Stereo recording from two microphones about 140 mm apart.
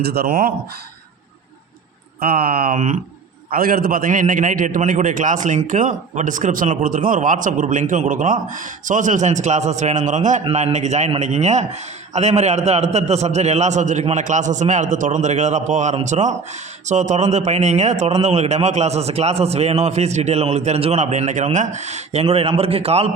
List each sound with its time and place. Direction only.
0.2 s speech: 90° right
2.2 s speech: 90° right; by 3.0 s 65° right (ahead or behind)
3.5 s a man's voice: 90° right; by 23.1 s 45° right (ahead or behind)